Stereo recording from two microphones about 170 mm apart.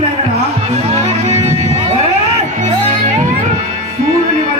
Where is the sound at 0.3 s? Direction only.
40° right (ahead or behind).